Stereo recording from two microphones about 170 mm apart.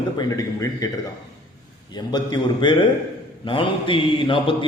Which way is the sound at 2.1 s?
25° left (ahead or behind).